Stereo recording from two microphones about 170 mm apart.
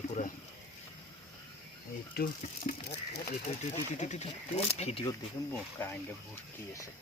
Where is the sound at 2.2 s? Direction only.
65° left (ahead or behind).